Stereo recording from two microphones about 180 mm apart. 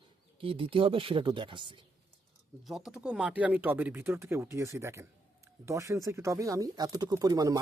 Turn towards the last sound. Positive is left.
turn(degrees=-20)  # may be behind; listen again after turning